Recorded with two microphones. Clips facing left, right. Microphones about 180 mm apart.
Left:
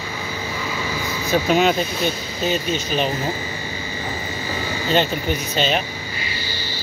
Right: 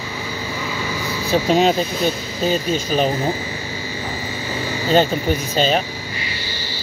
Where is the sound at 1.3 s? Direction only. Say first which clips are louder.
Right 2 dB; 30° right (ahead or behind).